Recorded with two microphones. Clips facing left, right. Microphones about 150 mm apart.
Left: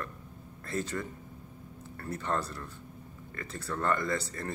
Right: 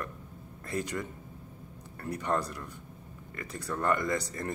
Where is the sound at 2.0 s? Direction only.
15° right (ahead or behind).